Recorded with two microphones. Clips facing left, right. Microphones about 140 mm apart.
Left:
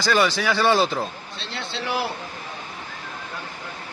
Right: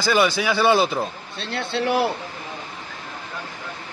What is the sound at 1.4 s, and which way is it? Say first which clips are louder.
Speech: right 7 dB; 55° right (ahead or behind).